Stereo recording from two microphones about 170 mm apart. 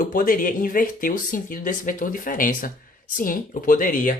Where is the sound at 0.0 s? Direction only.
55° left (ahead or behind).